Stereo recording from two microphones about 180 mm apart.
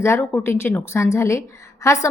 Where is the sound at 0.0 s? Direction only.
15° left (ahead or behind).